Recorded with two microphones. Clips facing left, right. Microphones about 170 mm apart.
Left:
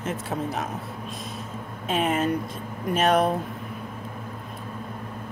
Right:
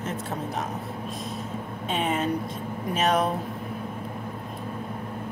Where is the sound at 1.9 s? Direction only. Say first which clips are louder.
Left 2 dB; centre (ahead or behind).